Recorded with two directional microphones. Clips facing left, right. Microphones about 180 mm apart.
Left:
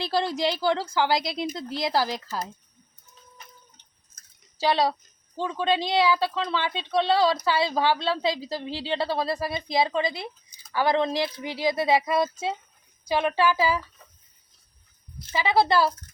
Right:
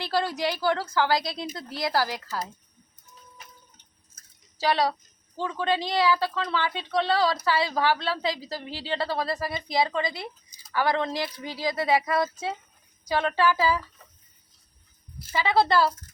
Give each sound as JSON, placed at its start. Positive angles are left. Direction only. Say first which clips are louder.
{"t": 0.0, "sound": "a woman's voice", "louder": "left 2 dB", "side_deg": 20}
{"t": 4.7, "sound": "a woman's voice", "louder": "left 1 dB", "side_deg": 20}
{"t": 15.3, "sound": "a woman's voice", "louder": "left 1 dB", "side_deg": 10}